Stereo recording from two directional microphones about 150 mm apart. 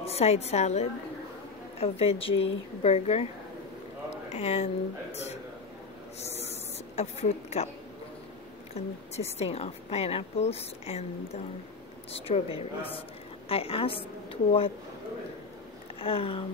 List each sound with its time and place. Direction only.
0.0 s a woman's voice: 45° left (ahead or behind)
4.1 s a sound: 45° left (ahead or behind)
5.1 s a man's voice: 45° left (ahead or behind)
6.2 s a sound: 45° left (ahead or behind)
8.7 s a woman's voice: 45° left (ahead or behind)
12.5 s a woman's voice: 40° left (ahead or behind)
16.0 s a woman's voice: 40° left (ahead or behind)